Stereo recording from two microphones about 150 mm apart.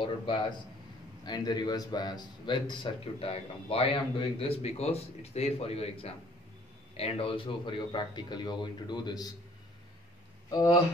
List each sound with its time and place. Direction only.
0.0 s a man's voice: 30° left (ahead or behind)
7.0 s a man's voice: 40° left (ahead or behind)
10.5 s a man's voice: 30° left (ahead or behind)